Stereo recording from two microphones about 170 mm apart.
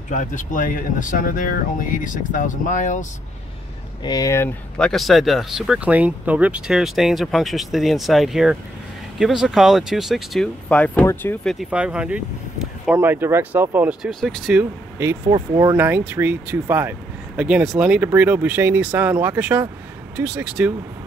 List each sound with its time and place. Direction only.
0.1 s speech: 50° left (ahead or behind)
4.0 s speech: 20° left (ahead or behind)
11.4 s speech: 5° right (ahead or behind)
15.2 s speech: 25° right (ahead or behind)
15.8 s speech: 10° right (ahead or behind)